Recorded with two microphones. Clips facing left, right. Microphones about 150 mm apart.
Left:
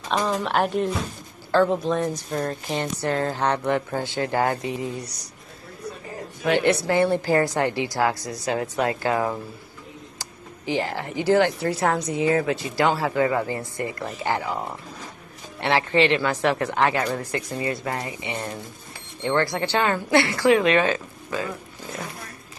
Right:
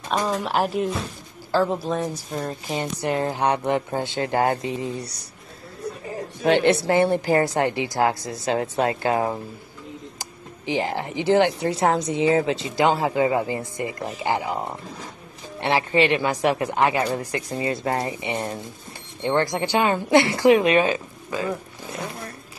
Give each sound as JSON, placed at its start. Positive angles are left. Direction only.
{"t": 0.1, "sound": "speech", "side_deg": -10}
{"t": 6.4, "sound": "speech", "side_deg": -25}